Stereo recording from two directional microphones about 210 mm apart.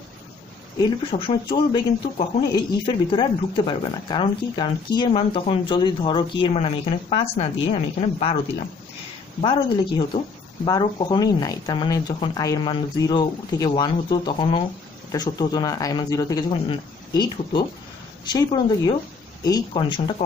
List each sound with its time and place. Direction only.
0.8 s speech: 25° left (ahead or behind)
9.4 s speech: 25° left (ahead or behind)